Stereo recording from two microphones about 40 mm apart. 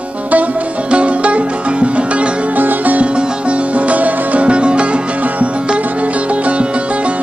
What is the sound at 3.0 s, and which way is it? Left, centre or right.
Music, right.